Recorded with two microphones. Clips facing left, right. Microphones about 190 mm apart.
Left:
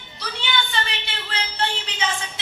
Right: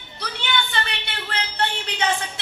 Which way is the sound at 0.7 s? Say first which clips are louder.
Even; 60° right (ahead or behind).